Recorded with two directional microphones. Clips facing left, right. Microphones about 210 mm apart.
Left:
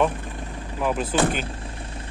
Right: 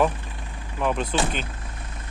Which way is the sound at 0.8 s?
5° left (ahead or behind).